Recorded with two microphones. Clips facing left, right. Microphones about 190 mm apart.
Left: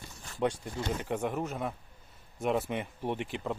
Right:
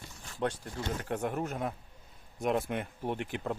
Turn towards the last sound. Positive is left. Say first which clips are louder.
# left 1 dB
turn(degrees=-5)  # may be behind; listen again after turning